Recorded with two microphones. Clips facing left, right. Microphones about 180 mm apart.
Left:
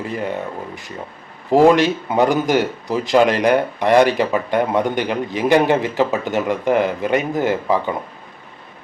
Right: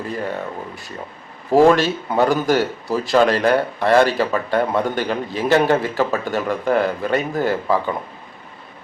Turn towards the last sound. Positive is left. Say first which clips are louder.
# left 1 dB
turn(degrees=20)  # may be behind; listen again after turning